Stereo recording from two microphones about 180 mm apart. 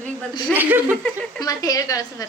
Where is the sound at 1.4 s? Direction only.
20° left (ahead or behind).